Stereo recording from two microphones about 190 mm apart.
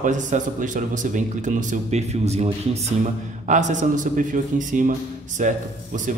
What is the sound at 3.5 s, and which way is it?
A man's voice, 40° right (ahead or behind).